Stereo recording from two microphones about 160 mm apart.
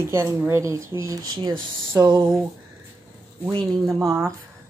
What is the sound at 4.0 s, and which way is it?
Speech, 15° right (ahead or behind).